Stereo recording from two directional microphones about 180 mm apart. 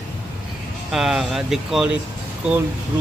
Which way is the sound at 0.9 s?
Centre (ahead or behind).